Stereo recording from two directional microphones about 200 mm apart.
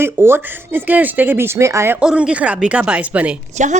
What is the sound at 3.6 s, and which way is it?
Speech, 35° right (ahead or behind).